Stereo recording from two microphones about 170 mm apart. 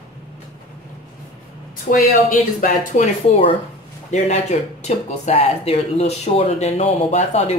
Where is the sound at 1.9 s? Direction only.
50° left (ahead or behind).